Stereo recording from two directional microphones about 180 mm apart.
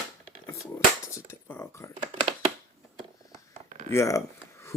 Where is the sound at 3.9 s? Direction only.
15° left (ahead or behind).